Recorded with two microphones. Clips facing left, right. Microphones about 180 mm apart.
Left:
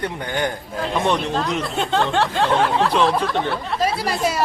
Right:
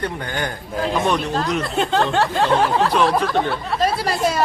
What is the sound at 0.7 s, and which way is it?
Speech, centre (ahead or behind).